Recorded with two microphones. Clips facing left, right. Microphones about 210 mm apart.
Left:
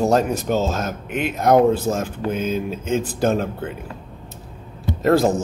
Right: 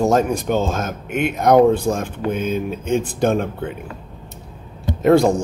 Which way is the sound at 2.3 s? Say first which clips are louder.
Right 2 dB; 55° right (ahead or behind).